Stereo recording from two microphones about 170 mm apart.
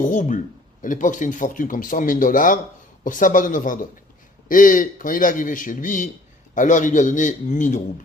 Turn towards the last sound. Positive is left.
turn(degrees=45)  # may be behind; listen again after turning